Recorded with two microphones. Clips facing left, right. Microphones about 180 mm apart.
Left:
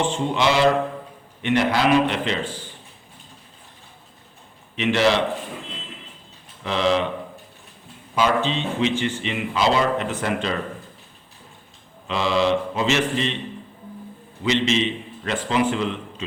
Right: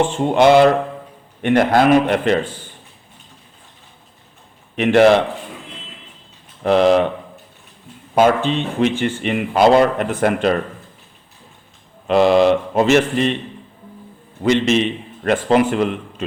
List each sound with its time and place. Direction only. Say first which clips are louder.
0.0 s speech: right 8 dB; 50° right (ahead or behind)
4.8 s speech: right 8 dB; 50° right (ahead or behind)
6.6 s speech: right 8 dB; 55° right (ahead or behind)
8.1 s speech: right 6 dB; 50° right (ahead or behind)
12.0 s speech: right 8 dB; 55° right (ahead or behind)
14.4 s a man's voice: right 5 dB; 55° right (ahead or behind)